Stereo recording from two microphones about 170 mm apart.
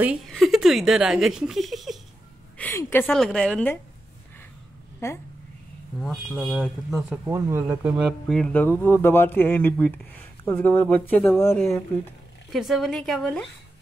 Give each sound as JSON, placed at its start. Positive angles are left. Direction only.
{"t": 0.3, "sound": "speech", "side_deg": 0}
{"t": 2.5, "sound": "a woman's voice", "side_deg": 15}
{"t": 3.1, "sound": "speech", "side_deg": 0}
{"t": 5.0, "sound": "speech", "side_deg": 15}
{"t": 5.9, "sound": "speech", "side_deg": 0}
{"t": 7.2, "sound": "speech", "side_deg": -15}
{"t": 8.3, "sound": "speech", "side_deg": 5}